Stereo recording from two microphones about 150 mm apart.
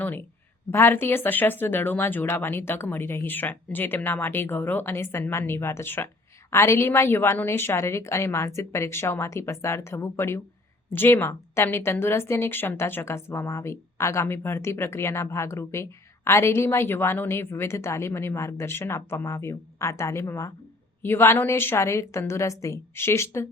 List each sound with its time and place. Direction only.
0.0 s speech: 10° left (ahead or behind)